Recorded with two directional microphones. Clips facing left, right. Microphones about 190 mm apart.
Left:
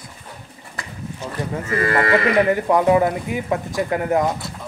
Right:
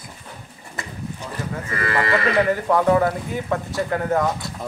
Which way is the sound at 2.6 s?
15° left (ahead or behind).